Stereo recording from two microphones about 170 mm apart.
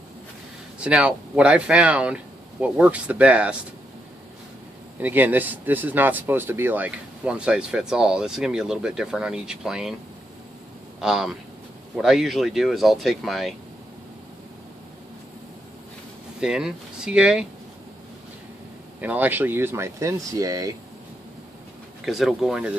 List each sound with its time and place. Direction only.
0.7 s speech: 5° right (ahead or behind)
4.9 s speech: 10° right (ahead or behind)
11.0 s speech: 5° right (ahead or behind)
16.3 s speech: 5° right (ahead or behind)
18.9 s speech: 10° right (ahead or behind)
22.0 s speech: centre (ahead or behind)